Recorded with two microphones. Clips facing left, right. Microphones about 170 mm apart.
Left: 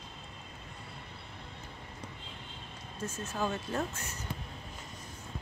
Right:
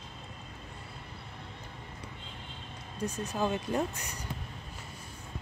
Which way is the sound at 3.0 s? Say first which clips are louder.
Right 3 dB; 15° right (ahead or behind).